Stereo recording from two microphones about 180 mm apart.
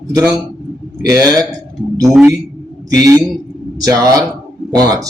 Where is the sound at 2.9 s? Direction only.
15° right (ahead or behind).